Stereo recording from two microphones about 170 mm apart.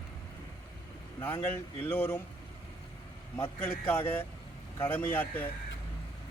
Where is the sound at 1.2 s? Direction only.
10° left (ahead or behind).